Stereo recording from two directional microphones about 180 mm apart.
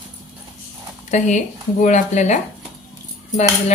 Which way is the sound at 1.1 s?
40° left (ahead or behind).